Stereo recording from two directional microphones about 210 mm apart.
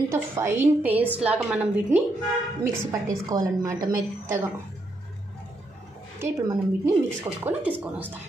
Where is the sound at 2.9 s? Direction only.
15° right (ahead or behind).